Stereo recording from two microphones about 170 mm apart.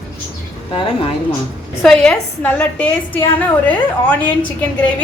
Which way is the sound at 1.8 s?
5° left (ahead or behind).